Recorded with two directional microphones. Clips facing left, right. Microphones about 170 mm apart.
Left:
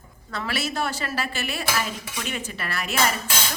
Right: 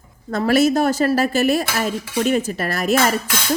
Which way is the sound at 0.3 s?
45° right (ahead or behind).